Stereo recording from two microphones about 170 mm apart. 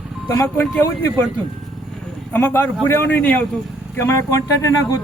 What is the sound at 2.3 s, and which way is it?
Speech, 10° left (ahead or behind).